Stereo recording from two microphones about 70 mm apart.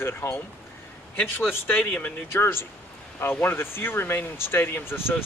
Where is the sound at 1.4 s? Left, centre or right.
Left.